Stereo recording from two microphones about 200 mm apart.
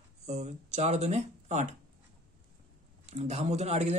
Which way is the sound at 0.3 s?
35° right (ahead or behind).